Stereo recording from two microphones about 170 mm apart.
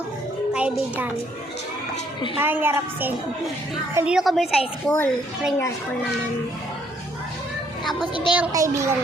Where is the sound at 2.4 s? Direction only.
10° right (ahead or behind).